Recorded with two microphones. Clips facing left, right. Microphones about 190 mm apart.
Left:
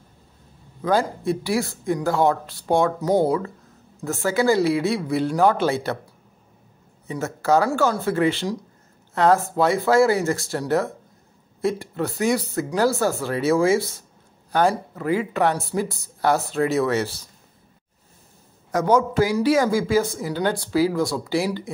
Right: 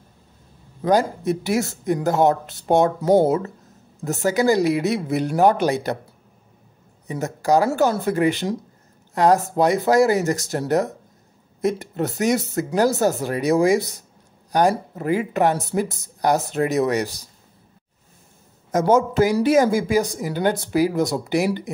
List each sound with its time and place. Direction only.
0.8 s speech: 20° right (ahead or behind)
7.1 s speech: 15° right (ahead or behind)
18.7 s speech: 20° right (ahead or behind)